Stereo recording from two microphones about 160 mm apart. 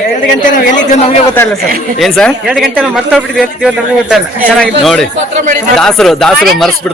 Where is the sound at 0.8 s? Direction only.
45° left (ahead or behind).